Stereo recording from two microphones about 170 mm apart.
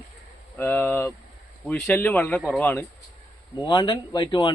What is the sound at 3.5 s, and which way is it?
Speech, 25° left (ahead or behind).